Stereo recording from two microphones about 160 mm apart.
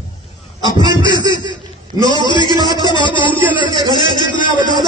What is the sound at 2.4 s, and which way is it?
Speech, 25° right (ahead or behind).